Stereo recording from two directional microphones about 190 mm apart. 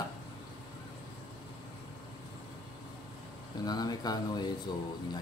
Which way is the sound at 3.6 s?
20° left (ahead or behind).